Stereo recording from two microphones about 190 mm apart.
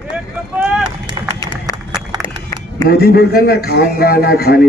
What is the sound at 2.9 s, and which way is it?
A man's voice, 55° left (ahead or behind).